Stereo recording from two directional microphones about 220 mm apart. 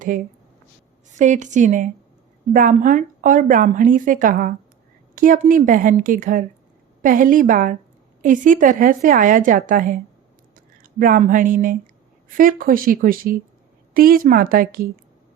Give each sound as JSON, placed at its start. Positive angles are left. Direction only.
{"t": 1.1, "sound": "speech", "side_deg": -35}